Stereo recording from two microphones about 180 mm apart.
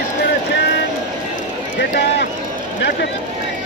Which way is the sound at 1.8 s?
70° left (ahead or behind).